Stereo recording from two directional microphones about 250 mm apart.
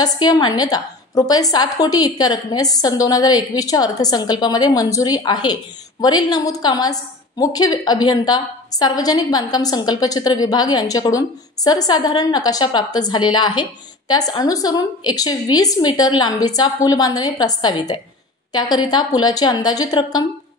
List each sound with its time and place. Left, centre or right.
0.0 s a woman's voice: centre